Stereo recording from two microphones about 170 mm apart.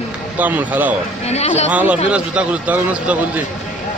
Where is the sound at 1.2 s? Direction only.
40° left (ahead or behind).